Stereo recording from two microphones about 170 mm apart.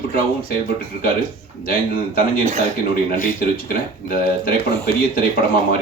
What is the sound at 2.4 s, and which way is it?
Speech, 40° right (ahead or behind).